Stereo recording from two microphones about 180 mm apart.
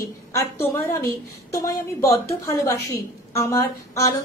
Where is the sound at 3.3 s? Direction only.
15° left (ahead or behind).